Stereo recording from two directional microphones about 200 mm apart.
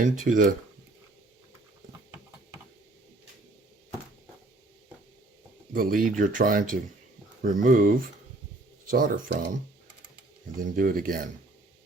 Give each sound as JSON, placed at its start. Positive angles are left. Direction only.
{"t": 0.0, "sound": "speech", "side_deg": -40}
{"t": 5.7, "sound": "speech", "side_deg": -45}
{"t": 10.6, "sound": "speech", "side_deg": -45}